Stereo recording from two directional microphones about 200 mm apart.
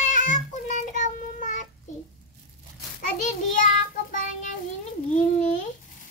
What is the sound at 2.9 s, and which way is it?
Child singing, 40° left (ahead or behind).